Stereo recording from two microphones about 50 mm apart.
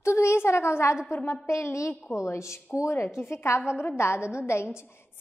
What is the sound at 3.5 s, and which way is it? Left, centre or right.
A woman's voice, left.